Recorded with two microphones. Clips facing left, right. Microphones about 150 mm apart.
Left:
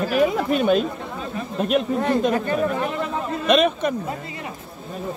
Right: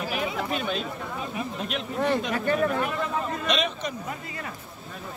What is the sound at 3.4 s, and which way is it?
Speech, 55° left (ahead or behind).